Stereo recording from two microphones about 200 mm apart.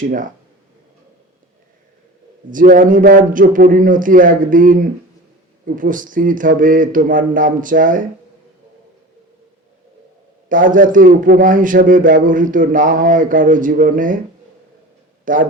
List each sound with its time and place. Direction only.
0.0 s a man's voice: 40° right (ahead or behind)
2.5 s a man's voice: 40° right (ahead or behind)
10.5 s a man's voice: 40° right (ahead or behind)
15.2 s a man's voice: 40° right (ahead or behind)